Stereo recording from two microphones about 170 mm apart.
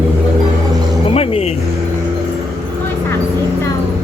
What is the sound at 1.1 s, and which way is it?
Vehicle, 35° left (ahead or behind).